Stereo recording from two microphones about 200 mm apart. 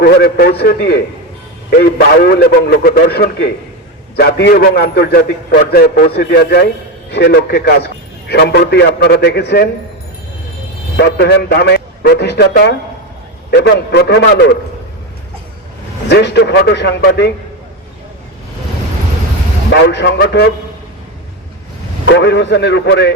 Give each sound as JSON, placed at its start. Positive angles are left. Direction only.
{"t": 0.0, "sound": "a man's voice", "side_deg": 50}
{"t": 10.9, "sound": "a man's voice", "side_deg": 55}
{"t": 16.0, "sound": "a man's voice", "side_deg": 55}
{"t": 19.7, "sound": "a man's voice", "side_deg": 60}
{"t": 22.0, "sound": "a man's voice", "side_deg": 60}